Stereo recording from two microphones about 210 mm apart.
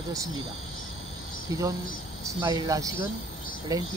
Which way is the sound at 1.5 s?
15° right (ahead or behind).